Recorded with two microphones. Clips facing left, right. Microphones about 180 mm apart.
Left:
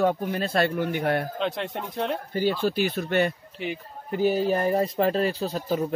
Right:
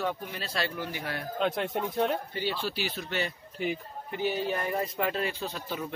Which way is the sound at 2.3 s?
45° left (ahead or behind).